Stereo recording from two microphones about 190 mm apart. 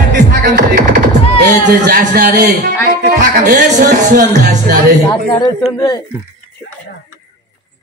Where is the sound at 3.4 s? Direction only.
40° right (ahead or behind).